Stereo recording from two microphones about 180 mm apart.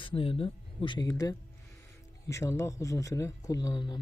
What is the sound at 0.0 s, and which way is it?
Speech, 30° left (ahead or behind).